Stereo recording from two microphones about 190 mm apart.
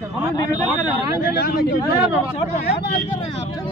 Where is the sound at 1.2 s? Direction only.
55° left (ahead or behind).